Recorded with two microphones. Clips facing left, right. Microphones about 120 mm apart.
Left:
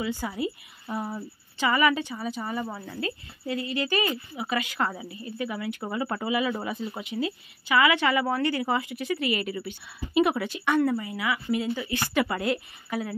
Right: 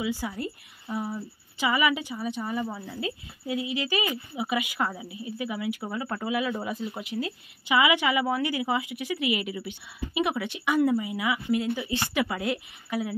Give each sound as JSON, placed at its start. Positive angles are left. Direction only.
{"t": 0.0, "sound": "a woman's voice", "side_deg": -5}
{"t": 0.3, "sound": "a woman's voice", "side_deg": 5}
{"t": 1.6, "sound": "a woman's voice", "side_deg": -10}
{"t": 7.6, "sound": "speech", "side_deg": -15}
{"t": 10.1, "sound": "speech", "side_deg": 0}
{"t": 12.1, "sound": "a woman's voice", "side_deg": 0}